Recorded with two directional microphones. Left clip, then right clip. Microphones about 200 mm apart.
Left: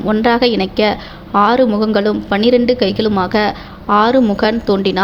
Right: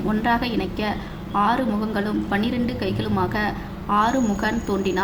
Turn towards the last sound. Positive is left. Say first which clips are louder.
# left 9 dB
turn(degrees=40)  # may be behind; listen again after turning